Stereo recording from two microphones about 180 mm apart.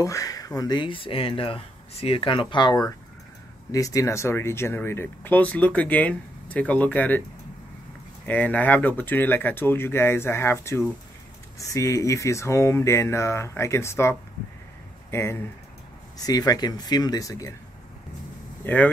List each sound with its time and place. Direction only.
0.0 s speech: 20° left (ahead or behind)
8.3 s speech: 10° left (ahead or behind)
18.6 s speech: 10° left (ahead or behind)